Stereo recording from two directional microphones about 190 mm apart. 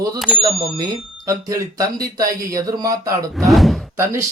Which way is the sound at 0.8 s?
20° right (ahead or behind).